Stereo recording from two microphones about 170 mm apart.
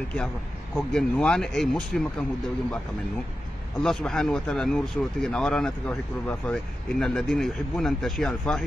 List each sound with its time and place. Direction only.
0.7 s speech: 5° left (ahead or behind)
3.8 s speech: centre (ahead or behind)